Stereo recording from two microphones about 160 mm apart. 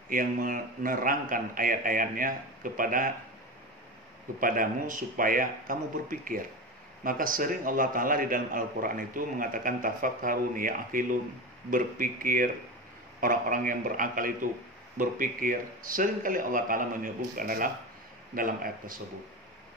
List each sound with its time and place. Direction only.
0.1 s a man's voice: 60° right (ahead or behind)
4.4 s a man's voice: 60° right (ahead or behind)